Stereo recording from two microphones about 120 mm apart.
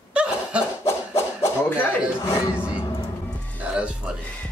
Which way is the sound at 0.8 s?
25° left (ahead or behind).